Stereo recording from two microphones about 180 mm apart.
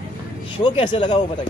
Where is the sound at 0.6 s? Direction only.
30° left (ahead or behind).